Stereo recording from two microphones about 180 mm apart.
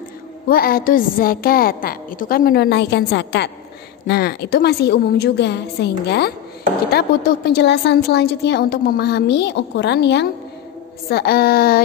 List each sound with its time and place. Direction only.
0.5 s a woman's voice: 55° left (ahead or behind); by 10.2 s 70° left (ahead or behind)
11.1 s a woman's voice: 60° left (ahead or behind)